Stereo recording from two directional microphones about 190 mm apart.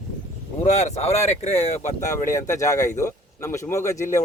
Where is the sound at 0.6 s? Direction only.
35° left (ahead or behind).